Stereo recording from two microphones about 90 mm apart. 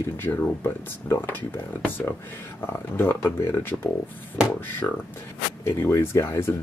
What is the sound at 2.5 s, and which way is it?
Speech, 25° left (ahead or behind).